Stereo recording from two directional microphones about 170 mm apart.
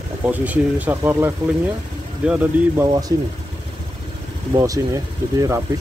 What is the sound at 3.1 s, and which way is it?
Speech, 20° right (ahead or behind).